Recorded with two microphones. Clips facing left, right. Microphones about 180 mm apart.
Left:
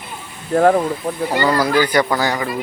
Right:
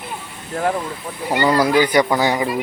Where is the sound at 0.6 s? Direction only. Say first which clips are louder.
Left 8 dB; 50° left (ahead or behind).